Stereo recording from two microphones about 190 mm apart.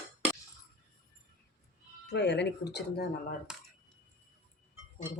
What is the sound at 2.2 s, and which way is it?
Speech, 65° left (ahead or behind).